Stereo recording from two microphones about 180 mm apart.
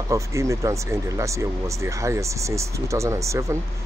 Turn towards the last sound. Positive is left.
turn(degrees=-15)  # may be behind; listen again after turning